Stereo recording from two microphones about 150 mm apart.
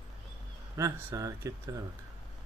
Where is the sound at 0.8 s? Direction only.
20° right (ahead or behind).